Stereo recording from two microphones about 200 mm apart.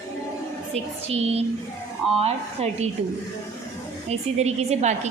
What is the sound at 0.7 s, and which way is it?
A woman's voice, 30° right (ahead or behind).